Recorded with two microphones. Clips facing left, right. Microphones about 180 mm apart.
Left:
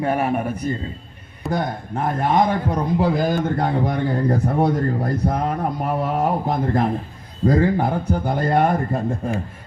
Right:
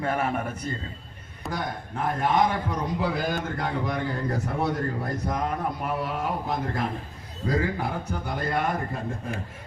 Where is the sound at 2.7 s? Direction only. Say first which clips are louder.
Left 7 dB; 45° left (ahead or behind).